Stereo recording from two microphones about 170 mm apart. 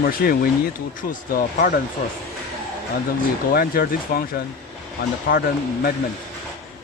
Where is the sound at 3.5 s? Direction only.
60° left (ahead or behind).